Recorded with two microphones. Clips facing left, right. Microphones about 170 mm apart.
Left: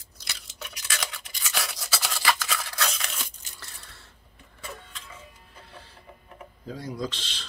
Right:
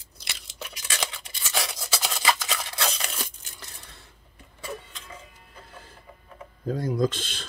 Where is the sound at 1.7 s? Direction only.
20° right (ahead or behind).